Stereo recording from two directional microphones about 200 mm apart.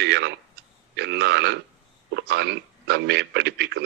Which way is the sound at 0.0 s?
60° right (ahead or behind).